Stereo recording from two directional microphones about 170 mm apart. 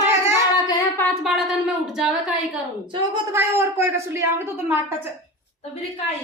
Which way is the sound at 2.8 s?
30° right (ahead or behind).